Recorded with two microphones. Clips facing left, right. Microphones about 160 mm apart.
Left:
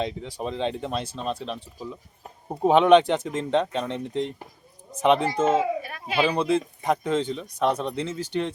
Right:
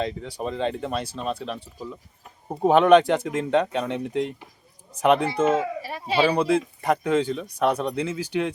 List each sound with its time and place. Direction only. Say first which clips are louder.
0.0 s speech: right 1 dB; centre (ahead or behind)
5.8 s a sound: right 3 dB; 30° right (ahead or behind)
6.4 s speech: right 1 dB; centre (ahead or behind)